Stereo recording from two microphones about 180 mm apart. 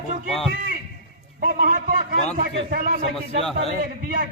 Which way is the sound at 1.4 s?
55° right (ahead or behind).